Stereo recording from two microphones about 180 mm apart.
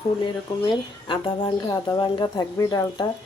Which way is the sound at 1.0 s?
25° left (ahead or behind).